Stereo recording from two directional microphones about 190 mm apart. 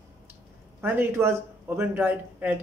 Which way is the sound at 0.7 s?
10° right (ahead or behind).